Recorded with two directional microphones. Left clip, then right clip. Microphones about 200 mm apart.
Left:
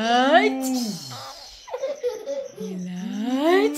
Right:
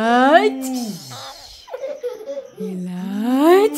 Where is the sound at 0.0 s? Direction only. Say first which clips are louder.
Right 4 dB; 55° right (ahead or behind).